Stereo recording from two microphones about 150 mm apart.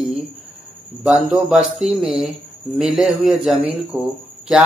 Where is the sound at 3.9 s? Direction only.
20° right (ahead or behind).